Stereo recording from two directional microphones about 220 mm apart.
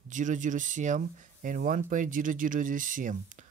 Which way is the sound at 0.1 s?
35° right (ahead or behind).